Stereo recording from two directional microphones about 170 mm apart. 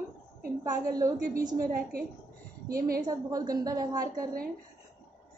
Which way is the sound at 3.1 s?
20° right (ahead or behind).